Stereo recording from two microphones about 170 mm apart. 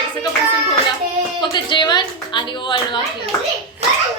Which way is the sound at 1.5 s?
25° left (ahead or behind).